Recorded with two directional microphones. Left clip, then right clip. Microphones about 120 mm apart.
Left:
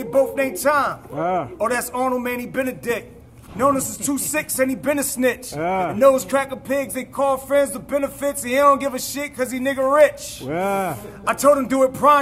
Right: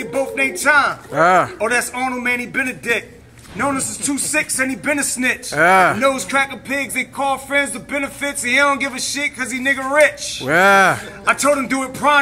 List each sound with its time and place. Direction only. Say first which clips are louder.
0.1 s music: left 1 dB; 30° left (ahead or behind)
1.1 s speech: right 12 dB; 35° right (ahead or behind)
1.6 s speech: right 3 dB; 30° left (ahead or behind)
5.5 s speech: right 10 dB; 30° right (ahead or behind)
5.9 s music: left 1 dB; 30° left (ahead or behind)
7.7 s speech: even; 20° left (ahead or behind)
10.5 s speech: right 11 dB; 35° right (ahead or behind)
11.2 s music: even; 30° left (ahead or behind)
11.6 s speech: left 2 dB; 30° left (ahead or behind)